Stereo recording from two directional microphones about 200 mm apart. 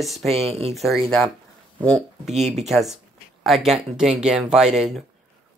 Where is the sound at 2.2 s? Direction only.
35° right (ahead or behind).